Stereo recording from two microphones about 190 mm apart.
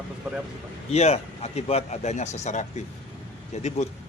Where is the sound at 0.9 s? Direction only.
35° left (ahead or behind).